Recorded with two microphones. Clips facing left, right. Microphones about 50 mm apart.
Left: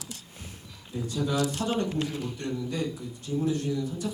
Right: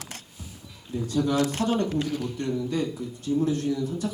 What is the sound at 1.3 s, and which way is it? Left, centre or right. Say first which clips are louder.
Speech: right 2 dB; right.